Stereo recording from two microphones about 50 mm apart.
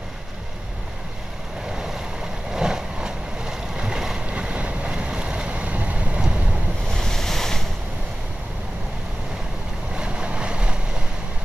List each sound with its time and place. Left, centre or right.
2.5 s boat: centre
4.3 s boat: right
6.9 s waves: centre
9.9 s vehicle: centre